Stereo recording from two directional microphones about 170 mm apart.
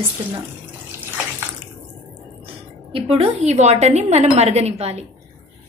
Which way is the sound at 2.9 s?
35° right (ahead or behind).